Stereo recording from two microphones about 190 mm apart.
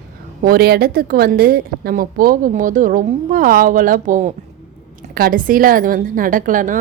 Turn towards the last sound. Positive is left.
turn(degrees=-45)  # may be behind; listen again after turning